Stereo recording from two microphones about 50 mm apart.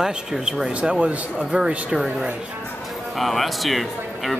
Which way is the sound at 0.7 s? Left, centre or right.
Right.